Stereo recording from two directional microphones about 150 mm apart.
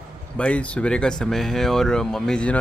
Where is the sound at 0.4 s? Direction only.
10° left (ahead or behind).